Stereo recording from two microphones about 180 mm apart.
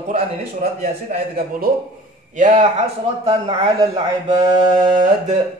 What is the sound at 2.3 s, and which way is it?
Speech, 45° right (ahead or behind).